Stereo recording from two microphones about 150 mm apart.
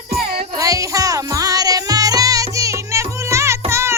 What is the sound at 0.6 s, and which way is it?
Music, 20° right (ahead or behind).